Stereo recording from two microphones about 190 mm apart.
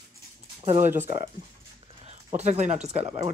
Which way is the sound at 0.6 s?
40° right (ahead or behind).